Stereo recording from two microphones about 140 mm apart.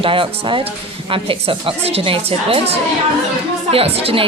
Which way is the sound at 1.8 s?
40° right (ahead or behind).